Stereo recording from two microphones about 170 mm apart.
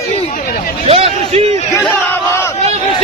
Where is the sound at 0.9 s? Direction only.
35° right (ahead or behind).